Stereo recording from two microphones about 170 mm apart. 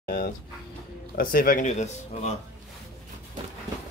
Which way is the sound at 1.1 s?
60° left (ahead or behind).